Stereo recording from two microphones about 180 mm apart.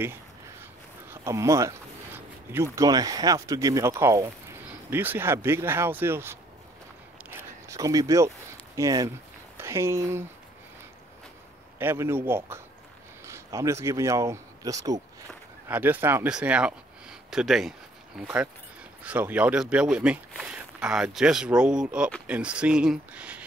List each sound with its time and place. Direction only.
1.1 s speech: 15° right (ahead or behind)
7.2 s zipper: 20° right (ahead or behind)
9.6 s speech: 15° right (ahead or behind)
11.8 s speech: 15° right (ahead or behind)